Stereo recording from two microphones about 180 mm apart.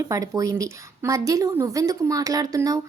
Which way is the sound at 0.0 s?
20° right (ahead or behind).